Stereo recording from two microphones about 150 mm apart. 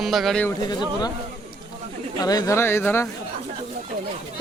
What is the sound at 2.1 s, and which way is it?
Speech, 25° left (ahead or behind).